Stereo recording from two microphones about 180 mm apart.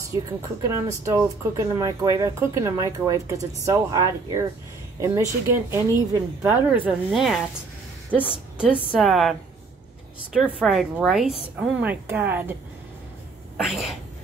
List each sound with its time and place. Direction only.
0.1 s a woman's voice: 20° right (ahead or behind); by 9.4 s centre (ahead or behind)
10.6 s speech: centre (ahead or behind)
13.7 s speech: centre (ahead or behind)